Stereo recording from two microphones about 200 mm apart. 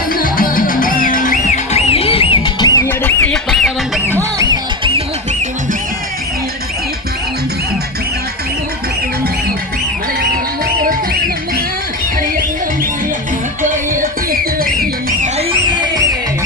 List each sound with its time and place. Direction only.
0.1 s music: 45° left (ahead or behind); by 4.1 s centre (ahead or behind)
4.1 s music: 15° right (ahead or behind)
10.8 s music: 45° right (ahead or behind)
13.6 s music: 40° right (ahead or behind)
15.4 s a sound: 20° right (ahead or behind)